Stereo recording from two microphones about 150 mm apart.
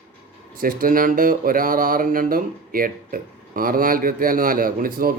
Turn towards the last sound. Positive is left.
turn(degrees=-70)  # may be behind; listen again after turning